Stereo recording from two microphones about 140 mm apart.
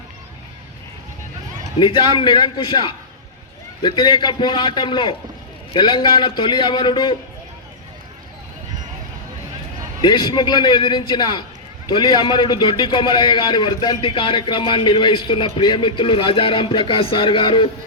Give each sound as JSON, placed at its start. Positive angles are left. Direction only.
{"t": 1.8, "sound": "a man's voice", "side_deg": 35}
{"t": 10.0, "sound": "a man's voice", "side_deg": 35}